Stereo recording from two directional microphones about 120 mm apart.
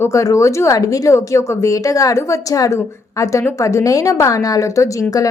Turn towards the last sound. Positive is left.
turn(degrees=25)  # may be behind; listen again after turning